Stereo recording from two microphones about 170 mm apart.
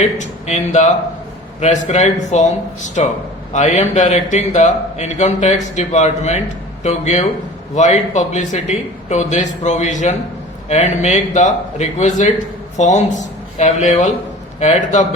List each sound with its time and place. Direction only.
0.0 s a man's voice: 45° left (ahead or behind)